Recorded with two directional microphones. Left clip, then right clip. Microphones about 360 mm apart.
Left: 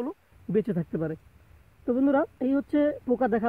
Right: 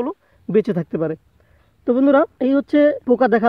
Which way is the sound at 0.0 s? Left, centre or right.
Right.